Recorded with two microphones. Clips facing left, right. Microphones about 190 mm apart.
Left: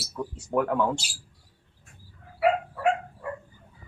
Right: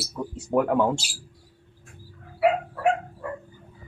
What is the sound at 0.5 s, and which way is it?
Speech, 15° right (ahead or behind).